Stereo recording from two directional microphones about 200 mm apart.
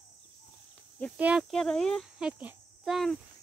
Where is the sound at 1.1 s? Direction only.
5° right (ahead or behind).